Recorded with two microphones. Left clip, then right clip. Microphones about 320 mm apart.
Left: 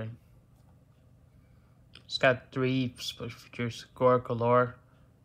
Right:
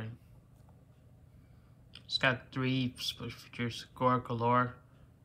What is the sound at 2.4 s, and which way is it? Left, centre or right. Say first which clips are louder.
Speech: left 4 dB; centre.